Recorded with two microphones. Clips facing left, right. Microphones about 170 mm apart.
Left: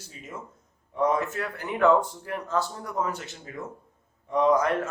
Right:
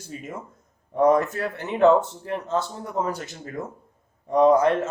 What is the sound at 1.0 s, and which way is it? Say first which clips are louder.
Speech: right 6 dB; 40° right (ahead or behind).